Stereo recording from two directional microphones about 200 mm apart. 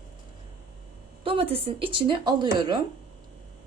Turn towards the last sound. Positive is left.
turn(degrees=-20)  # may be behind; listen again after turning